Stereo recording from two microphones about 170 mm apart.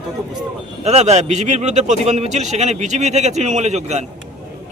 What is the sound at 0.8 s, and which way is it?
A man's voice, 40° right (ahead or behind).